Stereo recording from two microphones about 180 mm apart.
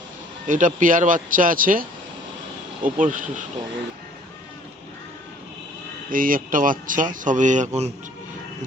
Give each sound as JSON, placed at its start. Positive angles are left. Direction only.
{"t": 0.4, "sound": "speech", "side_deg": -45}
{"t": 6.1, "sound": "speech", "side_deg": -50}